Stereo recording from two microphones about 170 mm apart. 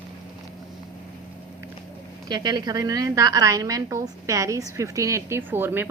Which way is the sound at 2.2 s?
25° right (ahead or behind).